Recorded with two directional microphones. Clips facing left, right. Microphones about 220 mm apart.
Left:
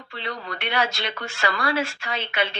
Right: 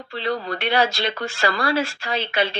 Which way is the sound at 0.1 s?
35° right (ahead or behind).